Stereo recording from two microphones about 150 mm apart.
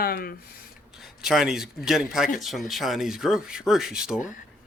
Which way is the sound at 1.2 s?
Centre (ahead or behind).